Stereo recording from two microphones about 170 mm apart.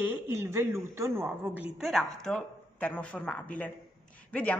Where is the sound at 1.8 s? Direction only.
Centre (ahead or behind).